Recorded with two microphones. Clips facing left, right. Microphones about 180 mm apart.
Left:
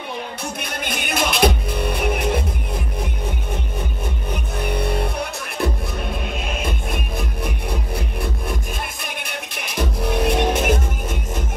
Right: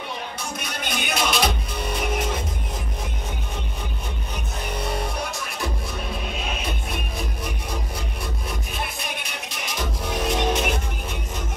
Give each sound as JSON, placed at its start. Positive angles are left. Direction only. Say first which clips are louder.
{"t": 0.4, "sound": "music", "louder": "left 3 dB", "side_deg": 55}
{"t": 4.3, "sound": "music", "louder": "left 7 dB", "side_deg": 60}
{"t": 6.4, "sound": "music", "louder": "left 4 dB", "side_deg": 50}